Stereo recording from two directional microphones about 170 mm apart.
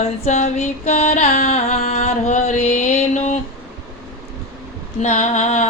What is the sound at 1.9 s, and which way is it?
Music, 40° left (ahead or behind).